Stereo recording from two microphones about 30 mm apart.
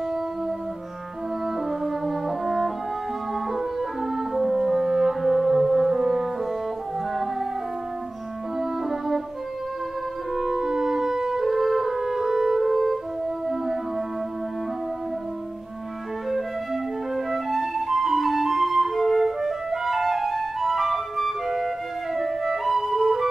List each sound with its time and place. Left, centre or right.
1.7 s french horn: centre
3.5 s music: centre
8.5 s music: centre
10.3 s music: centre
11.4 s music: centre
12.7 s french horn: centre
13.5 s music: centre
16.3 s flute: centre